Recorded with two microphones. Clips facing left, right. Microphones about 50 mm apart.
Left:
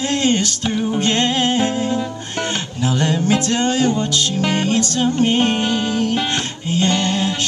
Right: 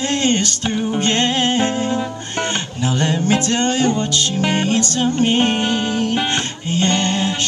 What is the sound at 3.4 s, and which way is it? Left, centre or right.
Music, centre.